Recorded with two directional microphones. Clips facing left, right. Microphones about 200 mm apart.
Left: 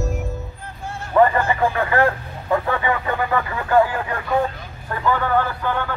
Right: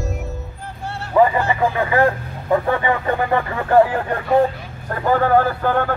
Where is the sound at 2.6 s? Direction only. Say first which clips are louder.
Right 3 dB; 30° right (ahead or behind).